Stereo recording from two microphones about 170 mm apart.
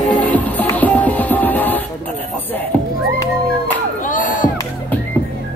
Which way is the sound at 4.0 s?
50° left (ahead or behind).